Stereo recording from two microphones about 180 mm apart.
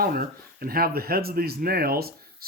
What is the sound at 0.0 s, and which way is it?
Speech, 55° right (ahead or behind).